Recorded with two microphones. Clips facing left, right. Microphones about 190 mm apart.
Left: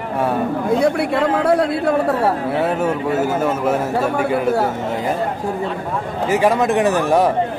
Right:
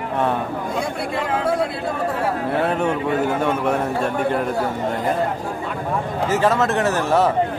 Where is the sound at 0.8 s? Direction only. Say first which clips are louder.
Left 8 dB; 65° left (ahead or behind).